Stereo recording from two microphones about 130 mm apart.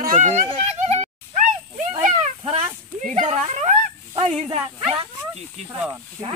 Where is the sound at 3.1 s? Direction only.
60° right (ahead or behind).